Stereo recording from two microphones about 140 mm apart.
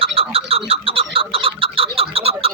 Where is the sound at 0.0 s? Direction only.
45° right (ahead or behind).